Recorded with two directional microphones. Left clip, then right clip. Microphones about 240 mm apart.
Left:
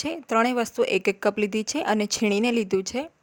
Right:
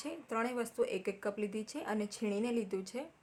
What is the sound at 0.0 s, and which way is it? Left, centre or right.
Speech, left.